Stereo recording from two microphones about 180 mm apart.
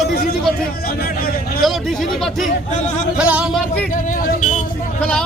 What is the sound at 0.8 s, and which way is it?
Speech, 55° left (ahead or behind).